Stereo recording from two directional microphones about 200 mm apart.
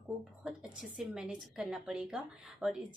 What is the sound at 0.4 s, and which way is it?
Speech, 5° right (ahead or behind).